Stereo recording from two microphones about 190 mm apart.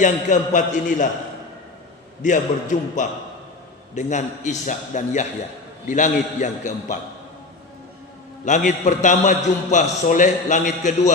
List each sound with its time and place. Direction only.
0.0 s a man's voice: 40° left (ahead or behind)
2.2 s a man's voice: 40° left (ahead or behind)
8.4 s a man's voice: 40° left (ahead or behind)